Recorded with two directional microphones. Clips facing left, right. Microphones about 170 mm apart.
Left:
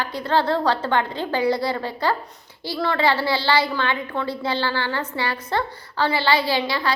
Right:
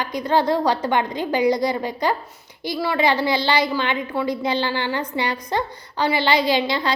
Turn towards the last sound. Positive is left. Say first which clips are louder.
# right 3 dB
turn(degrees=-20)  # may be behind; listen again after turning